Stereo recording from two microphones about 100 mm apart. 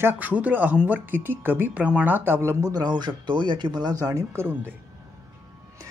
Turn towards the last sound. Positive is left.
turn(degrees=-20)  # may be behind; listen again after turning